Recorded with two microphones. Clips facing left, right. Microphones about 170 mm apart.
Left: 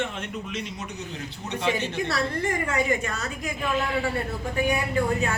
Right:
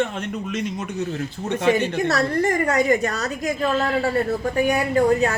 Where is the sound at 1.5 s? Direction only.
50° right (ahead or behind).